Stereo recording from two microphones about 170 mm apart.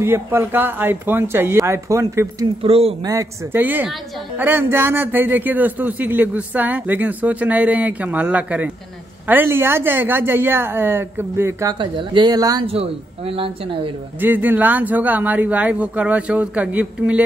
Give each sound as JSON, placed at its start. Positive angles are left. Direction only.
{"t": 0.0, "sound": "a man's voice", "side_deg": -15}
{"t": 2.6, "sound": "speech", "side_deg": -35}
{"t": 3.1, "sound": "a man's voice", "side_deg": -15}
{"t": 11.8, "sound": "speech", "side_deg": -25}
{"t": 12.6, "sound": "speech", "side_deg": -35}
{"t": 14.2, "sound": "a man's voice", "side_deg": -10}